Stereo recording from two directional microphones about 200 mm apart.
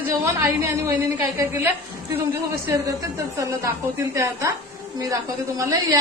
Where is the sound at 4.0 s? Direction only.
15° right (ahead or behind).